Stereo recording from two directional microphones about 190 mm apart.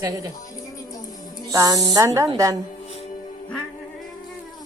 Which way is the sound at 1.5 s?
20° right (ahead or behind).